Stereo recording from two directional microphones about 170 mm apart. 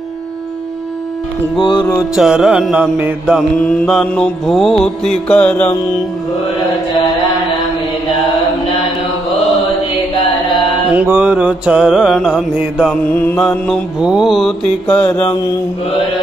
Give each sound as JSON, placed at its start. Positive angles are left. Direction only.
{"t": 1.6, "sound": "music", "side_deg": 25}
{"t": 2.0, "sound": "mantra", "side_deg": -5}
{"t": 10.9, "sound": "mantra", "side_deg": -10}
{"t": 13.1, "sound": "mantra", "side_deg": 10}